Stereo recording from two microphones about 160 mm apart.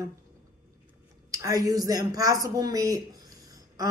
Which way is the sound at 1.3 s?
20° right (ahead or behind).